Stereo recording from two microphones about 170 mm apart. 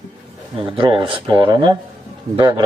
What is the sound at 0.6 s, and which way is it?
A man's voice, 30° right (ahead or behind).